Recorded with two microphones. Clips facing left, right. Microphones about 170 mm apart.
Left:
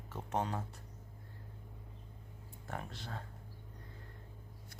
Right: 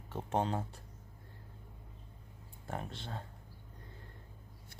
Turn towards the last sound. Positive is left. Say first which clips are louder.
# right 2 dB
turn(degrees=-25)  # may be behind; listen again after turning